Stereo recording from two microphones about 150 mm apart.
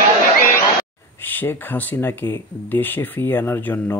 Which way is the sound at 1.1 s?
15° left (ahead or behind).